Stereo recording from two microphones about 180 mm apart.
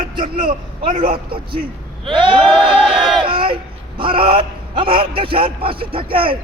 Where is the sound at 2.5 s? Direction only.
5° right (ahead or behind).